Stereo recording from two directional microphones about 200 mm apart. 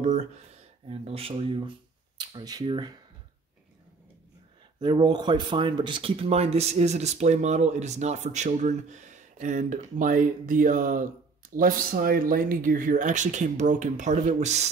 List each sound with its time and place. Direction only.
0.0 s a sound: 35° right (ahead or behind)
0.8 s speech: 30° right (ahead or behind)
4.7 s speech: 25° right (ahead or behind)